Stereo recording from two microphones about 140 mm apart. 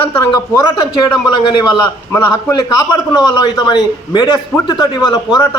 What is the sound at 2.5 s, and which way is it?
A man's voice, 30° left (ahead or behind).